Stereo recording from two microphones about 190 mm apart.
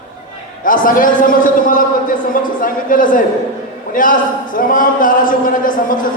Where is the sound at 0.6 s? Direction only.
45° left (ahead or behind).